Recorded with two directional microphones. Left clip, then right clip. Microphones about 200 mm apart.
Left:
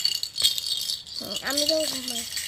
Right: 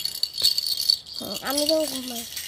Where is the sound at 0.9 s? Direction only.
Centre (ahead or behind).